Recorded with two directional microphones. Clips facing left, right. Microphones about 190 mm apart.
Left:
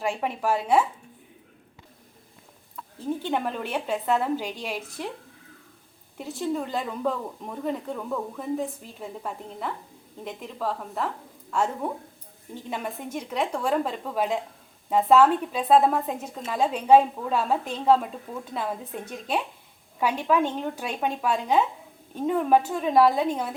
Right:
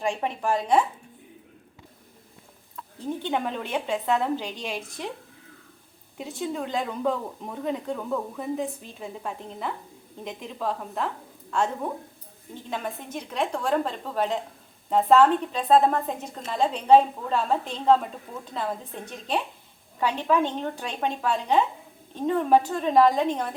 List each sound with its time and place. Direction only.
0.0 s speech: 5° left (ahead or behind)
2.7 s speech: 5° left (ahead or behind)
6.1 s a woman's voice: centre (ahead or behind)